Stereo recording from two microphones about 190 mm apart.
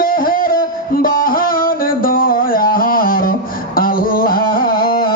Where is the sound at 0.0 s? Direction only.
50° left (ahead or behind).